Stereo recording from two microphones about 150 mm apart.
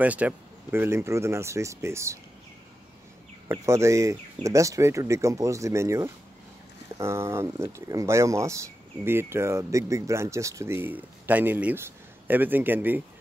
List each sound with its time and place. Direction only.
0.0 s speech: 10° right (ahead or behind)
3.4 s speech: 20° right (ahead or behind)